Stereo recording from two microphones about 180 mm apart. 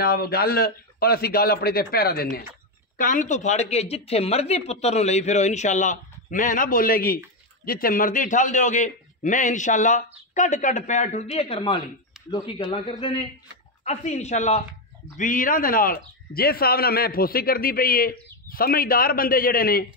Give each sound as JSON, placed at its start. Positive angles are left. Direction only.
{"t": 0.0, "sound": "a man's voice", "side_deg": 55}
{"t": 3.0, "sound": "a man's voice", "side_deg": 45}